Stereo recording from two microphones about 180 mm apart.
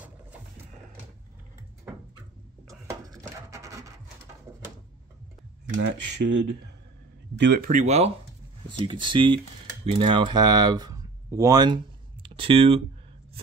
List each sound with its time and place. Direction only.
2.9 s wood: 20° right (ahead or behind)
5.8 s speech: 80° right
7.7 s speech: 35° right (ahead or behind)
8.6 s speech: 25° right (ahead or behind)